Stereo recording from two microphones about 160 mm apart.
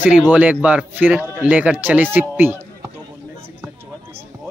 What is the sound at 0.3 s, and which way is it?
Speech, 10° right (ahead or behind).